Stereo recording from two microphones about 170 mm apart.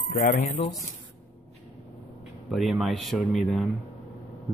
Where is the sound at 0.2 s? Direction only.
55° left (ahead or behind).